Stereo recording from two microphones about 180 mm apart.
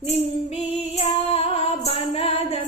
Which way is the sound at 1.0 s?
35° left (ahead or behind).